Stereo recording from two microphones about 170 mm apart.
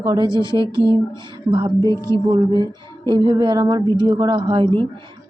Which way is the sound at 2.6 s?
25° right (ahead or behind).